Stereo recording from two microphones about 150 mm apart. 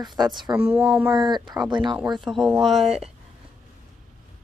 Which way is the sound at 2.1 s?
Centre (ahead or behind).